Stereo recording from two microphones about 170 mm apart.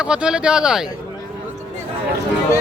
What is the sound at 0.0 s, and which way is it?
Speech, 5° right (ahead or behind).